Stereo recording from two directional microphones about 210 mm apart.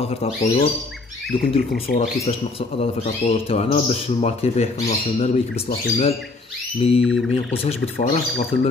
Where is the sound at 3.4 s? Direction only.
30° left (ahead or behind).